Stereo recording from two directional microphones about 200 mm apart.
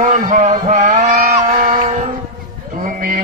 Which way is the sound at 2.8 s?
40° right (ahead or behind).